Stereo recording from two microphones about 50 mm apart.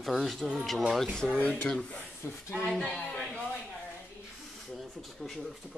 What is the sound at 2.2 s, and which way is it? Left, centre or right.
Speech, left.